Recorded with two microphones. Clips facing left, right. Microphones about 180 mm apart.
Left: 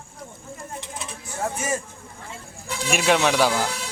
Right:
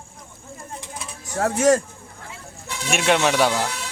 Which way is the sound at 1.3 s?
80° right.